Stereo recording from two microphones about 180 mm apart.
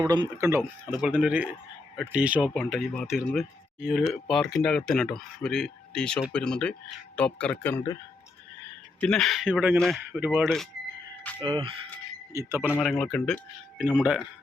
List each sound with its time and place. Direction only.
0.0 s speech: 25° right (ahead or behind); by 7.9 s 10° left (ahead or behind)
9.0 s speech: 5° left (ahead or behind)
10.1 s speech: 10° right (ahead or behind)
11.3 s speech: 25° right (ahead or behind)
12.3 s speech: 15° right (ahead or behind)
12.8 s speech: centre (ahead or behind)